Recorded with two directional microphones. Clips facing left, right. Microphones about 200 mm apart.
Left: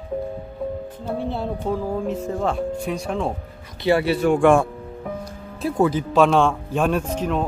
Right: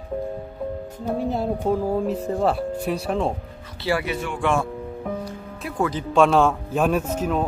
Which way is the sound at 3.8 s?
30° left (ahead or behind).